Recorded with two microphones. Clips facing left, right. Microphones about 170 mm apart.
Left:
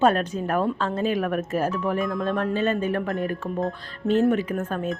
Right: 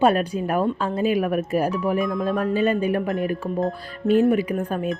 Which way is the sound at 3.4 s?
Centre (ahead or behind).